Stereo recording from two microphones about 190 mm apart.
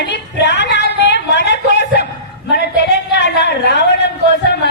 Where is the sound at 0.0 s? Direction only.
65° left (ahead or behind).